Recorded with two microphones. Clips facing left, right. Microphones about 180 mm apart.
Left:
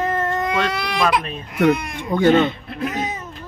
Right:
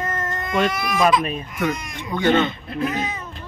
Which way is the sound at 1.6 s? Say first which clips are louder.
Left 9 dB; 60° left (ahead or behind).